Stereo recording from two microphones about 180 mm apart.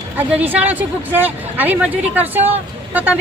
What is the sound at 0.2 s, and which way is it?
Speech, 10° right (ahead or behind).